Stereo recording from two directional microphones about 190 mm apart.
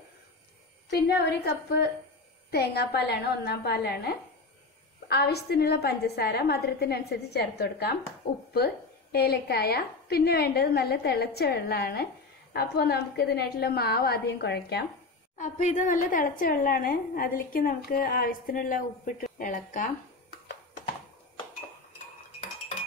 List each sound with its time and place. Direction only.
0.8 s a woman's voice: 60° left (ahead or behind)
15.3 s a woman's voice: 40° left (ahead or behind)